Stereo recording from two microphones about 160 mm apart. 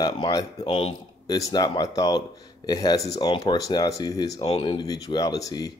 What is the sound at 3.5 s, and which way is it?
Speech, 20° left (ahead or behind).